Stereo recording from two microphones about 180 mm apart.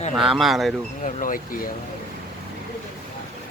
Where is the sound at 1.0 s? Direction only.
50° left (ahead or behind).